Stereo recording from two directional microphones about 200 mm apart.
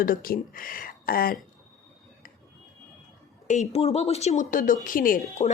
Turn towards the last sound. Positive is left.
turn(degrees=40)  # may be behind; listen again after turning